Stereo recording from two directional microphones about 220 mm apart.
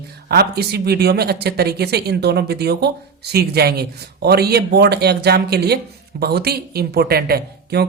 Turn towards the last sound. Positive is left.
turn(degrees=-45)  # may be behind; listen again after turning